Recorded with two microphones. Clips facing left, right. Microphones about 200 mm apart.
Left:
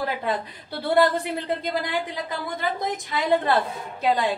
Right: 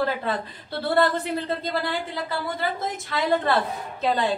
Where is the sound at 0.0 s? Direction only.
15° left (ahead or behind).